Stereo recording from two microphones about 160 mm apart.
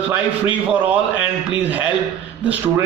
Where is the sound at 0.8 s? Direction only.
10° right (ahead or behind).